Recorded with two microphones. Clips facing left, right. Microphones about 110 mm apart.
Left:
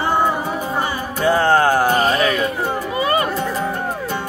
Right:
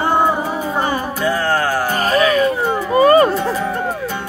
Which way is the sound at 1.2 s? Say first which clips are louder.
Left 5 dB; 25° left (ahead or behind).